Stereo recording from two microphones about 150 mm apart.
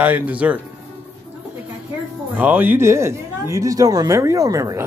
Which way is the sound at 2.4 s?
10° right (ahead or behind).